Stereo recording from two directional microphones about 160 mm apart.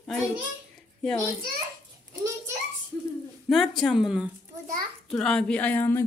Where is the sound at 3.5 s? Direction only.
Centre (ahead or behind).